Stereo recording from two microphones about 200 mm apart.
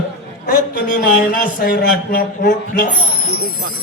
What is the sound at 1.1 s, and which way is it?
A man's voice, 45° left (ahead or behind).